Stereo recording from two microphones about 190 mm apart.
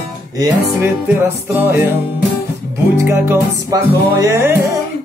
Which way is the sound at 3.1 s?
15° right (ahead or behind).